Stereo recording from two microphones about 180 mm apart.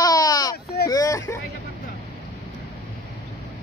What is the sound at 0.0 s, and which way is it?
Baby cry, 20° left (ahead or behind).